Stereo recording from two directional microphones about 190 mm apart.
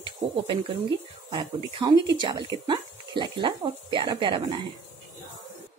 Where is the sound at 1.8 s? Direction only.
25° right (ahead or behind).